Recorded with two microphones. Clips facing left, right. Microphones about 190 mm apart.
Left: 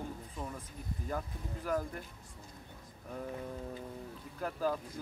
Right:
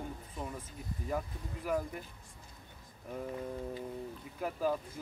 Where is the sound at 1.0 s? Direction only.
5° right (ahead or behind).